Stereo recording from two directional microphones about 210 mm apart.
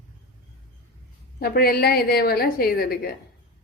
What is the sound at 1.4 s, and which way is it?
A woman's voice, 45° left (ahead or behind).